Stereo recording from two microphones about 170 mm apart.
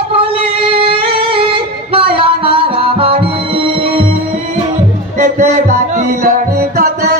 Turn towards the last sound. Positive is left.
turn(degrees=-65)  # may be behind; listen again after turning